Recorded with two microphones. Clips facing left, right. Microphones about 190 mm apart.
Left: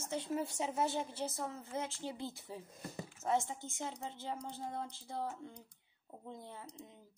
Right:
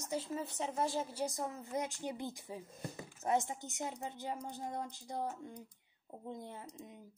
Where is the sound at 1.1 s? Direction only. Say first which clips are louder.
Right 2 dB; 15° right (ahead or behind).